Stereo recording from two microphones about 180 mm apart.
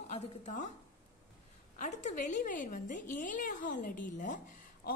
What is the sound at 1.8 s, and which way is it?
A woman's voice, 45° left (ahead or behind).